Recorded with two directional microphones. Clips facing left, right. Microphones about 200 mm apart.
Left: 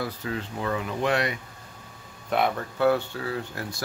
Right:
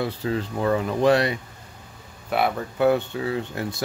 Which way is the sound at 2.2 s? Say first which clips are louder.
Right 1 dB; 5° right (ahead or behind).